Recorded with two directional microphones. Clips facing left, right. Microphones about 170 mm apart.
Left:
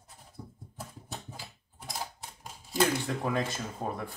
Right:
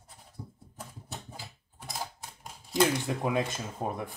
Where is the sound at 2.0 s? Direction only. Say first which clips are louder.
Right 1 dB; centre (ahead or behind).